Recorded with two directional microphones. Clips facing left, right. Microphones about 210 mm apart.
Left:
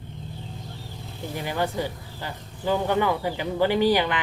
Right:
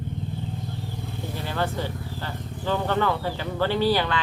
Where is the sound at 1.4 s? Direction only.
15° left (ahead or behind).